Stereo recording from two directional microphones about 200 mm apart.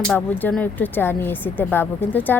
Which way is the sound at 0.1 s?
5° left (ahead or behind).